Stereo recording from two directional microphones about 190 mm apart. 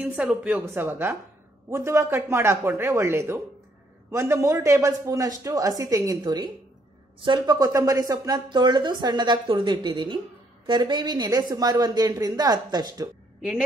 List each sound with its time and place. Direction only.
0.0 s a man's voice: 10° right (ahead or behind)